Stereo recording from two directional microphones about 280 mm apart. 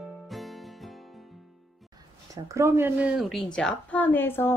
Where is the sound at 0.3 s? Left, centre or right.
Centre.